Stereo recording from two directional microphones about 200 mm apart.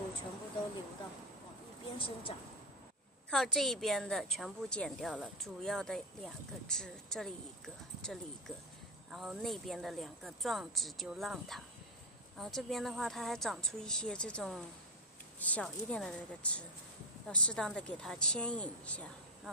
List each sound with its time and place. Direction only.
2.0 s speech: 25° left (ahead or behind)
3.3 s a woman's voice: centre (ahead or behind)